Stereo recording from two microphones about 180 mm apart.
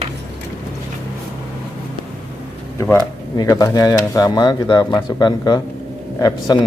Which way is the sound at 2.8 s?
15° left (ahead or behind).